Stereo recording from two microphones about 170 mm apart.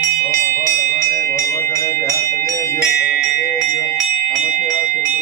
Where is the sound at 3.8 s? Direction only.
20° left (ahead or behind).